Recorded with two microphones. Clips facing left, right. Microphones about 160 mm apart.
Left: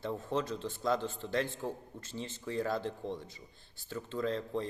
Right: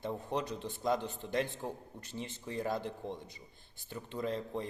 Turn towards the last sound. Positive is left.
turn(degrees=-15)  # may be behind; listen again after turning